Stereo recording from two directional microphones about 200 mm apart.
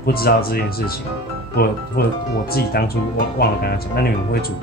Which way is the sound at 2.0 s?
50° left (ahead or behind).